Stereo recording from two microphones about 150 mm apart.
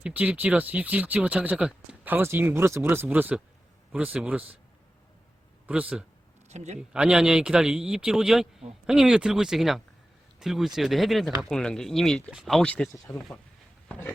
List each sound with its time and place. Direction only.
0.0 s speech: 10° right (ahead or behind)
5.6 s speech: 10° right (ahead or behind)
6.5 s a man's voice: 50° right (ahead or behind)
6.9 s speech: 5° right (ahead or behind)